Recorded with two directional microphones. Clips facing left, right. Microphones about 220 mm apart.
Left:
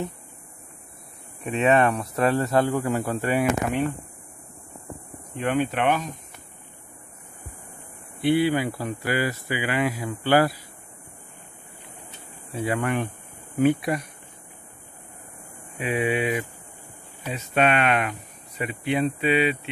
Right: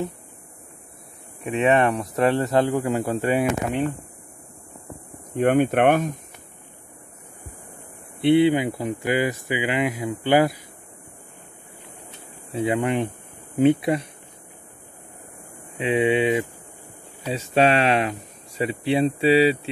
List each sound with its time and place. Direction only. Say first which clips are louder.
1.5 s speech: right 1 dB; 15° right (ahead or behind)
5.3 s speech: right 6 dB; 50° right (ahead or behind)
8.2 s speech: right 4 dB; 25° right (ahead or behind)
12.5 s speech: right 3 dB; 20° right (ahead or behind)
15.8 s speech: right 5 dB; 25° right (ahead or behind)